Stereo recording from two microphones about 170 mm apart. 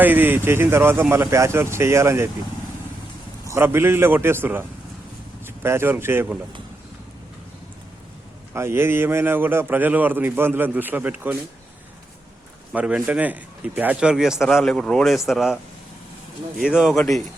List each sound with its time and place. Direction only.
0.0 s a man's voice: 10° right (ahead or behind)
3.4 s a man's voice: 15° right (ahead or behind)
8.5 s a man's voice: 15° right (ahead or behind)
12.7 s a man's voice: 5° right (ahead or behind)
16.6 s a man's voice: 5° right (ahead or behind)